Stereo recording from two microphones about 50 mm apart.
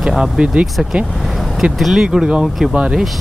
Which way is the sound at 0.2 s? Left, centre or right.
Centre.